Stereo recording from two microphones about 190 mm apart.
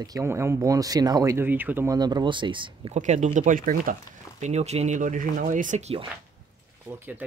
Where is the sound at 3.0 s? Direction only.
40° right (ahead or behind).